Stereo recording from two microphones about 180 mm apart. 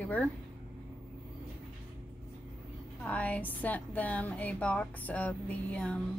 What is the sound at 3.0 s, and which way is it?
A woman's voice, 10° left (ahead or behind).